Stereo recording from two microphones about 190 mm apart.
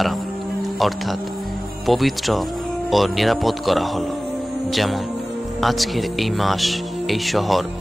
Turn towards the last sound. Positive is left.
turn(degrees=0)  # may be behind; listen again after turning